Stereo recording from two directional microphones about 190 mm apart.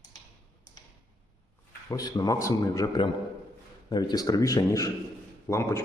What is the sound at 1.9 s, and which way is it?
A man's voice, 20° left (ahead or behind).